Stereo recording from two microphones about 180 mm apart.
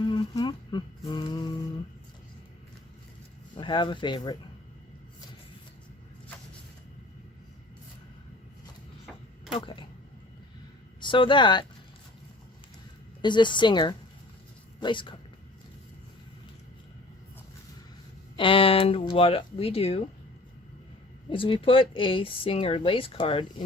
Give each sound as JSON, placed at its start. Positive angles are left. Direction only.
{"t": 0.0, "sound": "music", "side_deg": 25}
{"t": 3.6, "sound": "speech", "side_deg": 25}
{"t": 9.5, "sound": "speech", "side_deg": 30}
{"t": 11.0, "sound": "speech", "side_deg": 25}
{"t": 13.2, "sound": "speech", "side_deg": 25}
{"t": 18.3, "sound": "speech", "side_deg": 30}
{"t": 21.2, "sound": "speech", "side_deg": 30}